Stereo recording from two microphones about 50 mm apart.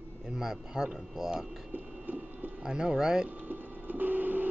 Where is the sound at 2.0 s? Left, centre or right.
Right.